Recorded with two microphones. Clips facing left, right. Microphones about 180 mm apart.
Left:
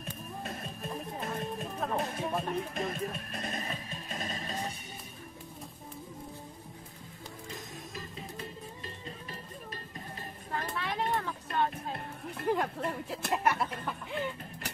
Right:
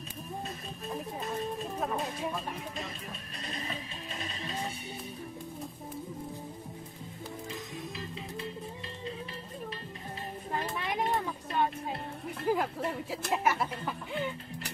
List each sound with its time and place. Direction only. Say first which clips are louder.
2.3 s speech: left 5 dB; 55° left (ahead or behind)
10.5 s children playing: right 1 dB; 15° right (ahead or behind)
12.4 s speech: right 1 dB; 5° right (ahead or behind)